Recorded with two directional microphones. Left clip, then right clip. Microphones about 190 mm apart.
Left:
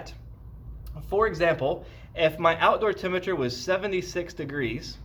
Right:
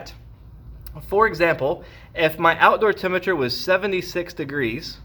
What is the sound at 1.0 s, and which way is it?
Speech, 45° right (ahead or behind).